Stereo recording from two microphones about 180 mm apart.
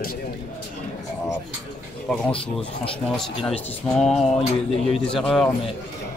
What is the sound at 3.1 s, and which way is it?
Speech, 5° left (ahead or behind).